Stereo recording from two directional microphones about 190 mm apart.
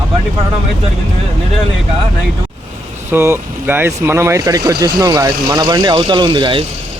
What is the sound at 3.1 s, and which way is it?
Speech, 10° right (ahead or behind).